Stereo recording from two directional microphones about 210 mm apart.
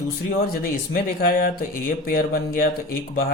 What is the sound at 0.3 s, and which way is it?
Speech, 45° left (ahead or behind).